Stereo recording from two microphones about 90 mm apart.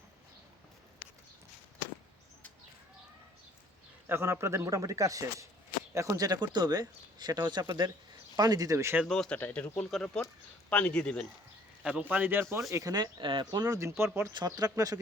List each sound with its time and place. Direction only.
4.0 s a man's voice: 25° right (ahead or behind); by 7.7 s 55° right (ahead or behind)
8.4 s a man's voice: 45° right (ahead or behind)
9.0 s speech: 5° left (ahead or behind)
9.4 s speech: 20° left (ahead or behind)
11.8 s speech: 15° right (ahead or behind); by 12.6 s 30° right (ahead or behind)
12.7 s speech: 45° right (ahead or behind)
13.7 s a man's voice: 35° right (ahead or behind)
14.3 s speech: 50° right (ahead or behind)